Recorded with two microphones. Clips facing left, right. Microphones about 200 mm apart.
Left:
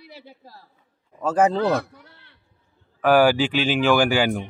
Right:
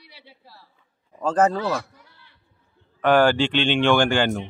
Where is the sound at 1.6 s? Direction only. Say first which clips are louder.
Left 4 dB; 55° left (ahead or behind).